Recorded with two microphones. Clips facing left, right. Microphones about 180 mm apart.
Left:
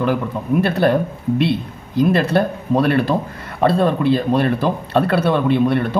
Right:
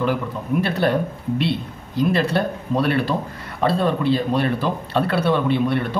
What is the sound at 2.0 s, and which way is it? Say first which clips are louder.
Speech: left 4 dB; 45° left (ahead or behind).